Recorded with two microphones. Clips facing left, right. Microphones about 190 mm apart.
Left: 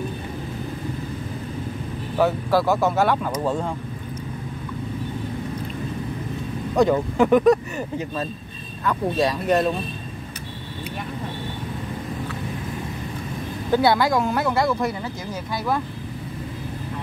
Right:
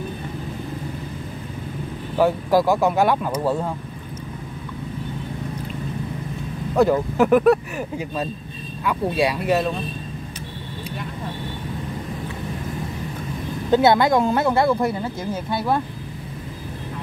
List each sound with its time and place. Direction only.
2.1 s speech: 10° right (ahead or behind)
6.7 s speech: 5° right (ahead or behind)
13.7 s speech: 20° right (ahead or behind)